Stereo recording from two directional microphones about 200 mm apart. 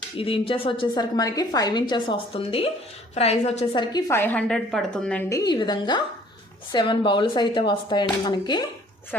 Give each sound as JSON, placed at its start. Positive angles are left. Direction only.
{"t": 0.2, "sound": "a woman's voice", "side_deg": 25}
{"t": 5.3, "sound": "a woman's voice", "side_deg": 20}